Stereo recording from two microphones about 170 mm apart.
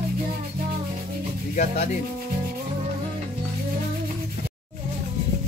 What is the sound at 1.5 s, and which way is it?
Speech, 45° left (ahead or behind).